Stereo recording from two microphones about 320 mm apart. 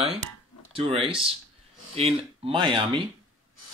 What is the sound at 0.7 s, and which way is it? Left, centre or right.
Speech, centre.